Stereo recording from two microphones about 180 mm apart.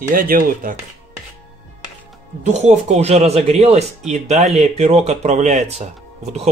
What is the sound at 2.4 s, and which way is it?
Speech, 40° right (ahead or behind).